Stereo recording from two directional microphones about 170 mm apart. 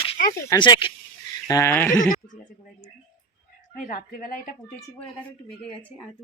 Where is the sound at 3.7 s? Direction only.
55° left (ahead or behind).